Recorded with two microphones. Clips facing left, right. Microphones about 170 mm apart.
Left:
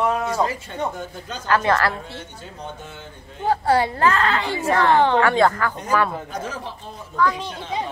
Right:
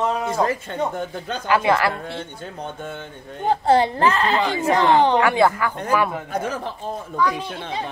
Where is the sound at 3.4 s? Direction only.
25° right (ahead or behind).